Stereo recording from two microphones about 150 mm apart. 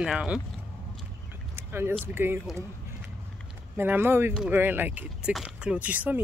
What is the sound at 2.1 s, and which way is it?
Speech, 15° right (ahead or behind).